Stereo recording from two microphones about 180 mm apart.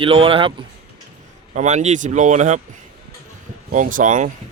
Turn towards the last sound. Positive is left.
turn(degrees=-45)  # may be behind; listen again after turning